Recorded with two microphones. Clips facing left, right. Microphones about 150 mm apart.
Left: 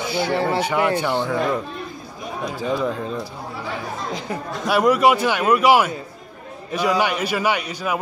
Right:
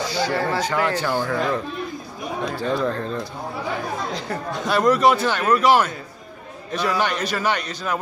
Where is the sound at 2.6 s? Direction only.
5° left (ahead or behind).